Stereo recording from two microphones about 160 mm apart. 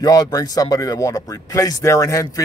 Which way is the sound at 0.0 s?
20° left (ahead or behind).